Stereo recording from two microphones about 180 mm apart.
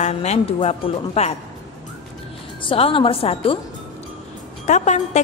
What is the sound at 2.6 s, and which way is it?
A woman's voice, 30° left (ahead or behind).